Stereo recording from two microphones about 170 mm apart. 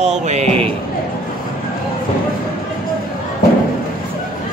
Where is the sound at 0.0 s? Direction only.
40° right (ahead or behind).